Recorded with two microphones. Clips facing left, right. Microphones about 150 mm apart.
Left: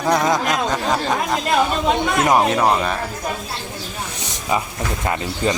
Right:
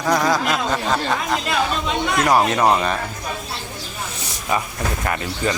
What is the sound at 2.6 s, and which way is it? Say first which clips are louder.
Speech: right 1 dB; 5° right (ahead or behind).